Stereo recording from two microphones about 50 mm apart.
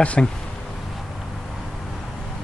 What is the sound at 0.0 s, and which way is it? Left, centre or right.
Speech, left.